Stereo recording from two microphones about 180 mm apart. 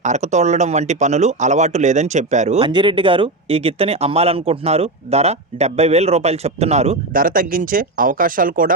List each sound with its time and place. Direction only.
0.0 s speech: 40° right (ahead or behind)
2.6 s speech: 25° right (ahead or behind)
7.1 s speech: 50° right (ahead or behind)